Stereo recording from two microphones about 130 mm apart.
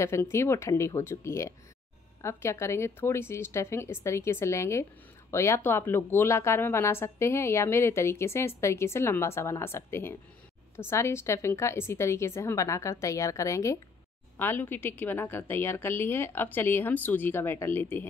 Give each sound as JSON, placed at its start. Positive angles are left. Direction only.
{"t": 0.0, "sound": "a woman's voice", "side_deg": 20}